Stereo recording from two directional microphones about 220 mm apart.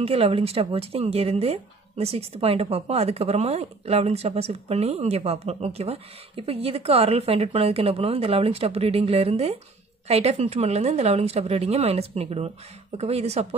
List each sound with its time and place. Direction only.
0.0 s speech: 25° right (ahead or behind)